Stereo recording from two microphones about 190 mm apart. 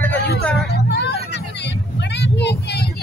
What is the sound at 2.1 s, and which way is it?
Speech, 65° left (ahead or behind).